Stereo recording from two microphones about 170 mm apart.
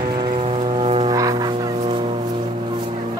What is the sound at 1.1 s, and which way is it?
Music, 20° right (ahead or behind).